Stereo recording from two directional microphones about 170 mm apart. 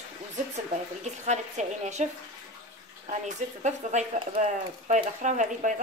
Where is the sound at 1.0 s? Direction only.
45° right (ahead or behind).